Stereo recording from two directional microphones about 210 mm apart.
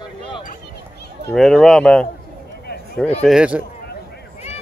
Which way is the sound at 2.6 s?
50° left (ahead or behind).